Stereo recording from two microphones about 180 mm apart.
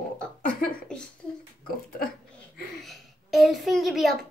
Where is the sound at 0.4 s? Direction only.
55° left (ahead or behind).